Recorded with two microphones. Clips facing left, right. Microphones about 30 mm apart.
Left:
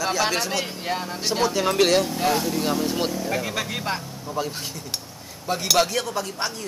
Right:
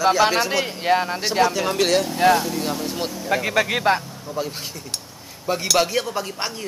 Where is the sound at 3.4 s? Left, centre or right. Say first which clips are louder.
Right 7 dB; right.